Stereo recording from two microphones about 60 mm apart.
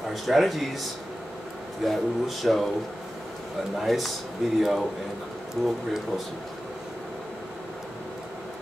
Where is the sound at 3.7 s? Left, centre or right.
Centre.